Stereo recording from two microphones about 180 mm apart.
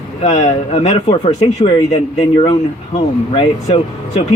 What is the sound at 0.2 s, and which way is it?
A man's voice, 35° left (ahead or behind).